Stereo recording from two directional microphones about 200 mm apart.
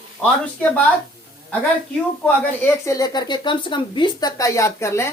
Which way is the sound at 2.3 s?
10° left (ahead or behind).